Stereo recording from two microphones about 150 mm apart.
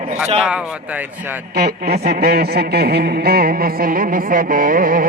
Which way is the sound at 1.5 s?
90° right.